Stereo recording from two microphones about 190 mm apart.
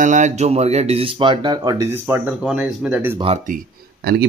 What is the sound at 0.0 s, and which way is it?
Speech, 40° right (ahead or behind).